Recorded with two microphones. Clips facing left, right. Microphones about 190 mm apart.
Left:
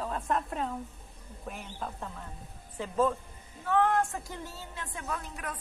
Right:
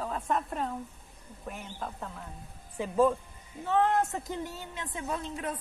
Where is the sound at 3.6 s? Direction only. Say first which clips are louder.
Even; 25° right (ahead or behind).